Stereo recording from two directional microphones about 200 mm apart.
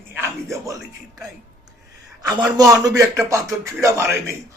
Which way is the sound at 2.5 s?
15° right (ahead or behind).